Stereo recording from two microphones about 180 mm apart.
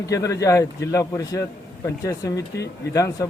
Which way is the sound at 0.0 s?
20° left (ahead or behind).